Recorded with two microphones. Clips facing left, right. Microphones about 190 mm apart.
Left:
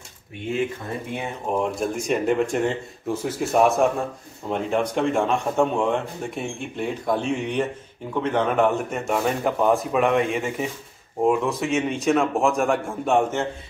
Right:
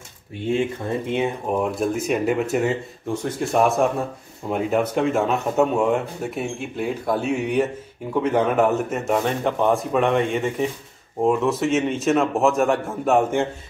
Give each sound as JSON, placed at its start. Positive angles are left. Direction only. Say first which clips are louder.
{"t": 1.5, "sound": "speech", "louder": "left 2 dB", "side_deg": -5}